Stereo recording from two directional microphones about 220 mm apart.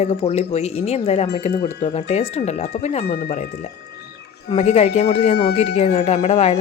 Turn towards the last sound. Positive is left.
turn(degrees=30)  # may be behind; listen again after turning